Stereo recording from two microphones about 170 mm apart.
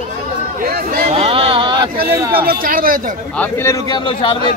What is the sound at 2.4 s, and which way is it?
Speech, 60° right (ahead or behind).